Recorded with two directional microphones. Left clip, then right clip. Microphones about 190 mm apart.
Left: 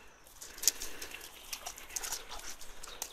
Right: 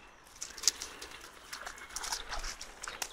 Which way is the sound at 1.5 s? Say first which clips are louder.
Even; 30° left (ahead or behind).